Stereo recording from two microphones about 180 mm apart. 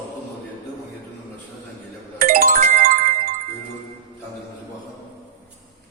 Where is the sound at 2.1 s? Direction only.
55° right (ahead or behind).